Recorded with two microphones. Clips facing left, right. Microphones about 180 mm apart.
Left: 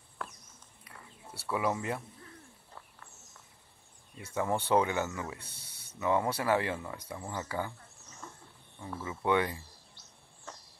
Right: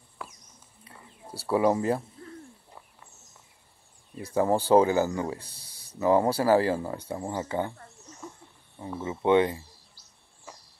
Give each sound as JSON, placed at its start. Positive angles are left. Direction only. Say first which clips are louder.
{"t": 0.2, "sound": "a sound", "louder": "even", "side_deg": -5}
{"t": 1.2, "sound": "speech", "louder": "right 8 dB", "side_deg": -30}
{"t": 4.2, "sound": "speech", "louder": "right 8 dB", "side_deg": -30}
{"t": 8.2, "sound": "wild animals", "louder": "right 6 dB", "side_deg": -10}
{"t": 8.7, "sound": "speech", "louder": "right 6 dB", "side_deg": -25}